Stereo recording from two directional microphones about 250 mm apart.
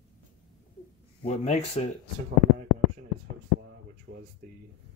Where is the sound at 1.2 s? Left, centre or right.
Left.